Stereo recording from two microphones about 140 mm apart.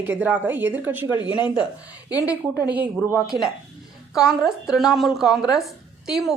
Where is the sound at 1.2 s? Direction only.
35° left (ahead or behind).